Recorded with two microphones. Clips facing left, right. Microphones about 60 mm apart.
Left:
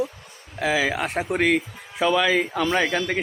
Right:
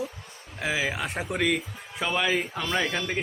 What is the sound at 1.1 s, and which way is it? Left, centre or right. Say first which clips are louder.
Speech: left 6 dB; left.